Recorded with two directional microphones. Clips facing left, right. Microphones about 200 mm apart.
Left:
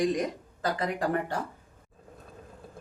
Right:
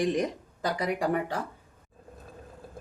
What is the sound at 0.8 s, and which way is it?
Speech, 10° right (ahead or behind).